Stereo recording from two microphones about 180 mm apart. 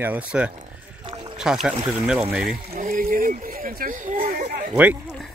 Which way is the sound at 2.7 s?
45° right (ahead or behind).